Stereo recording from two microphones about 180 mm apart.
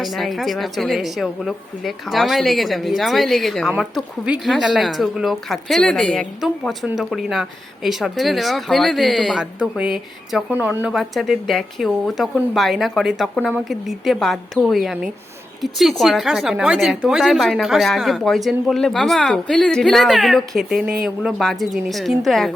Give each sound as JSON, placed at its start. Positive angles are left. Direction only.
{"t": 0.0, "sound": "speech", "side_deg": 0}